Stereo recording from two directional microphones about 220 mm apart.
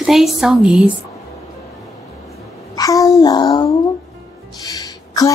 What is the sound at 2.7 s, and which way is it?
Babbling, 15° left (ahead or behind).